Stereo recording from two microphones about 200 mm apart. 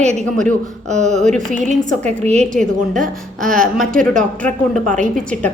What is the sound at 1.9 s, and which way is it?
Speech, 35° right (ahead or behind).